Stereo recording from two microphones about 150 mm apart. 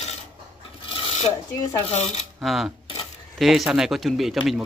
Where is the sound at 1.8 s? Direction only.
45° left (ahead or behind).